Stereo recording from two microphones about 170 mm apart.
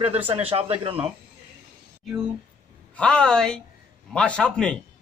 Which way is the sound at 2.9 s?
5° left (ahead or behind).